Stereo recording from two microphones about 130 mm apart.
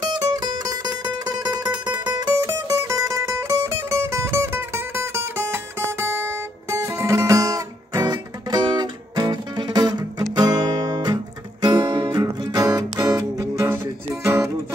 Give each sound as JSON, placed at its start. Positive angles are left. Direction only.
{"t": 0.1, "sound": "music", "side_deg": -30}